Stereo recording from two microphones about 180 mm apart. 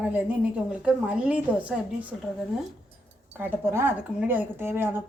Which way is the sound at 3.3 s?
10° right (ahead or behind).